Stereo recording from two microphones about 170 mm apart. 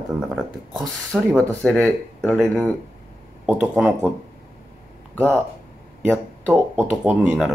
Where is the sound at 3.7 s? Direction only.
Centre (ahead or behind).